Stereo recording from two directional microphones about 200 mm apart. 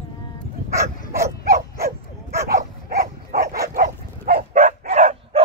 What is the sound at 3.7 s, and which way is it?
Dog, 50° right (ahead or behind).